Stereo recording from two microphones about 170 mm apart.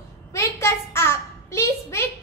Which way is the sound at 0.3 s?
15° left (ahead or behind).